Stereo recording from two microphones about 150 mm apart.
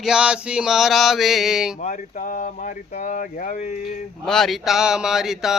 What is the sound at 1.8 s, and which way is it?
Speech, 60° left (ahead or behind).